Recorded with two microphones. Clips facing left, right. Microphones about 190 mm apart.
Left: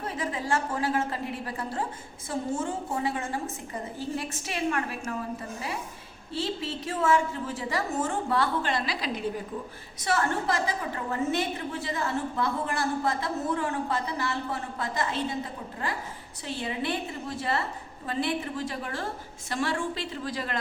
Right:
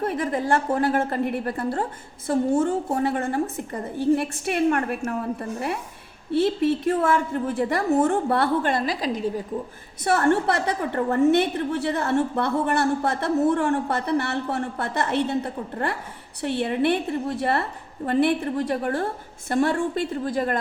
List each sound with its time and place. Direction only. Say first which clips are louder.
0.0 s a woman's voice: right 8 dB; 55° right (ahead or behind); by 9.3 s 40° right (ahead or behind)
10.0 s a woman's voice: right 7 dB; 60° right (ahead or behind)